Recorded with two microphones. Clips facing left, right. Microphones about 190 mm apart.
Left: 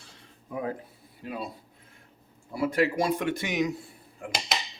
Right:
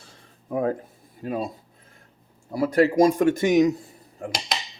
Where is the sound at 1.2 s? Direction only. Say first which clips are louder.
Right 8 dB; 45° right (ahead or behind).